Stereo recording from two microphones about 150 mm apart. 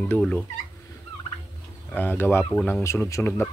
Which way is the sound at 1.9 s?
15° left (ahead or behind).